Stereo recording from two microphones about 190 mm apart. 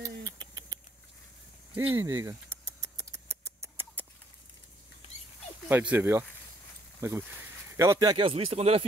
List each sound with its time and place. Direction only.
0.0 s rodents: 20° right (ahead or behind)
1.8 s speech: 15° right (ahead or behind)
2.8 s mouse: 15° right (ahead or behind)
5.7 s speech: 10° right (ahead or behind)
8.2 s speech: 30° right (ahead or behind)